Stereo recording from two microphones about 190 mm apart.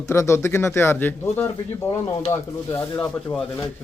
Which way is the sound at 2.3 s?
15° left (ahead or behind).